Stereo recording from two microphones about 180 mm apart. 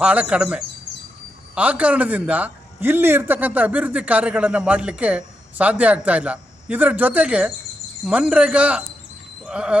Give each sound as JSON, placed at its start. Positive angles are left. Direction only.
{"t": 0.0, "sound": "a man's voice", "side_deg": -5}